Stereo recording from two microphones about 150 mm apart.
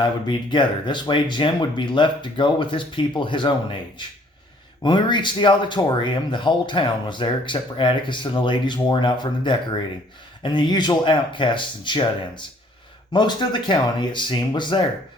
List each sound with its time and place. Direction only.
0.0 s speech: 30° left (ahead or behind)